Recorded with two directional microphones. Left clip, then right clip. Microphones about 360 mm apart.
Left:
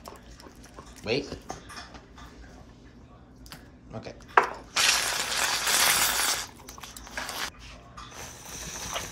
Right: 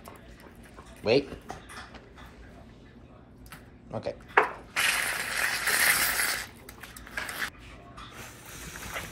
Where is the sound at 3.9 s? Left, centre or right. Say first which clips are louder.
Right 7 dB; centre.